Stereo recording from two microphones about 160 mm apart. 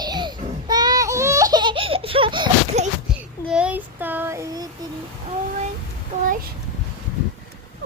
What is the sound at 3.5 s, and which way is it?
Child singing, 5° right (ahead or behind).